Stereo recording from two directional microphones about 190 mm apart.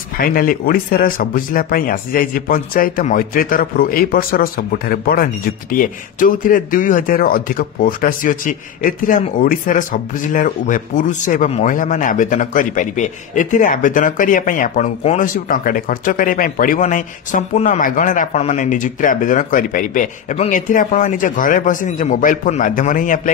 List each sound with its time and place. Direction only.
0.2 s speech: 50° left (ahead or behind)